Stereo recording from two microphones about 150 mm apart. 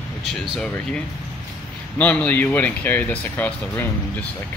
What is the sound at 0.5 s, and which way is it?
Speech, 5° left (ahead or behind).